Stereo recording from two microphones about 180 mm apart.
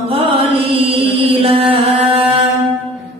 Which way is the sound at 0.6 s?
30° right (ahead or behind).